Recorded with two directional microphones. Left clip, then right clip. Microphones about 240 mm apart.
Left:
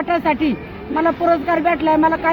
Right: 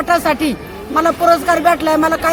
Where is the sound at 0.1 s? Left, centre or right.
Centre.